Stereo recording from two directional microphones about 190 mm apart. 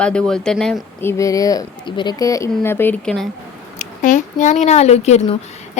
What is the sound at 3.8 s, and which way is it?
A woman's voice, 40° left (ahead or behind).